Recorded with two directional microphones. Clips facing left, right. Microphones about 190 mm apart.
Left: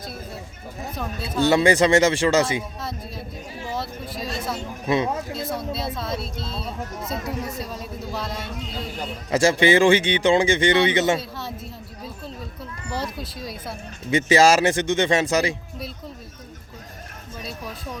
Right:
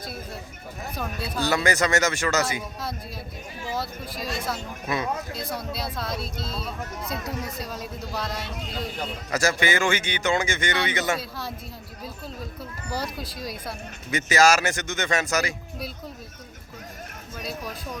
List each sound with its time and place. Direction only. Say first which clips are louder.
0.9 s speech: even; centre (ahead or behind)
1.4 s speech: left 7 dB; 25° left (ahead or behind)
3.7 s speech: left 1 dB; centre (ahead or behind)
4.9 s speech: left 6 dB; 25° left (ahead or behind)
5.3 s speech: left 4 dB; centre (ahead or behind)
6.7 s speech: left 2 dB; 25° left (ahead or behind)
7.6 s speech: left 2 dB; centre (ahead or behind)
9.3 s speech: left 7 dB; 30° left (ahead or behind)
11.2 s speech: left 1 dB; centre (ahead or behind)
13.0 s speech: left 2 dB; centre (ahead or behind)
14.1 s speech: left 4 dB; 30° left (ahead or behind)